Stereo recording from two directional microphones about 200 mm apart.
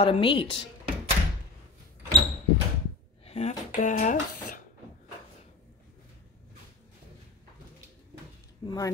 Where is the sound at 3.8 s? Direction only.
40° left (ahead or behind).